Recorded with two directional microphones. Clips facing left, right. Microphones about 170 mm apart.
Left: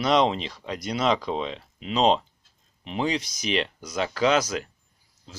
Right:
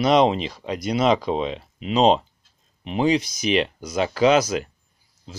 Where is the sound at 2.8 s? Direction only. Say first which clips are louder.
Right 6 dB; 10° right (ahead or behind).